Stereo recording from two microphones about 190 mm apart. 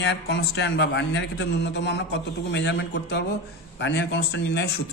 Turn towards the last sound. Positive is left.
turn(degrees=60)  # may be behind; listen again after turning